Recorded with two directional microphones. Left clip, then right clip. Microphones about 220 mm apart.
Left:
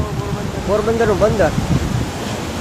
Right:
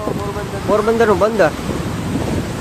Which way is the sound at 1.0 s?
20° right (ahead or behind).